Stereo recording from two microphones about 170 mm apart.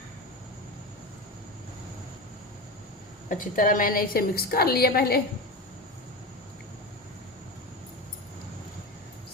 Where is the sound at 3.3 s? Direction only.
50° left (ahead or behind).